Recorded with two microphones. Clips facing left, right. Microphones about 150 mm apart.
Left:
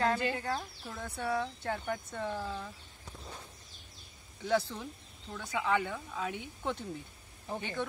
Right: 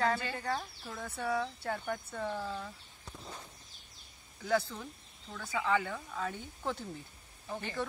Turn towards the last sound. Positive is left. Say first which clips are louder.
# left 1 dB
turn(degrees=0)  # may be behind; listen again after turning